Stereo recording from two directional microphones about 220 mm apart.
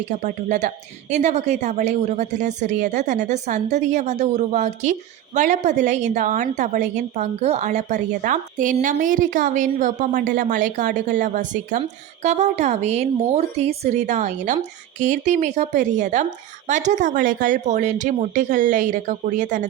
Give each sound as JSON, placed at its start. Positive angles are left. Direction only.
{"t": 0.0, "sound": "a woman's voice", "side_deg": -35}